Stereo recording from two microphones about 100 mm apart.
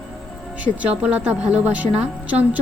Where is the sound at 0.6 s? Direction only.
15° right (ahead or behind).